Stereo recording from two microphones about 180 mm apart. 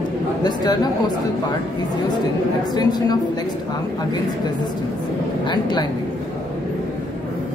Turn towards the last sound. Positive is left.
turn(degrees=25)  # may be behind; listen again after turning